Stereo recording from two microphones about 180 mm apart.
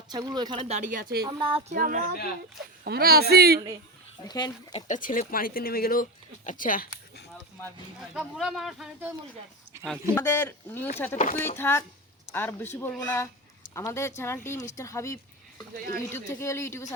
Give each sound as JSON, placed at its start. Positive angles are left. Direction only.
{"t": 0.1, "sound": "speech", "side_deg": -25}
{"t": 1.2, "sound": "speech", "side_deg": -25}
{"t": 1.7, "sound": "speech", "side_deg": -50}
{"t": 4.3, "sound": "speech", "side_deg": 25}
{"t": 4.7, "sound": "speech", "side_deg": 45}
{"t": 8.1, "sound": "speech", "side_deg": 0}
{"t": 10.2, "sound": "speech", "side_deg": 10}